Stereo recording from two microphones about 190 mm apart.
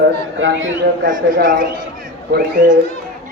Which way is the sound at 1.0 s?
45° right (ahead or behind).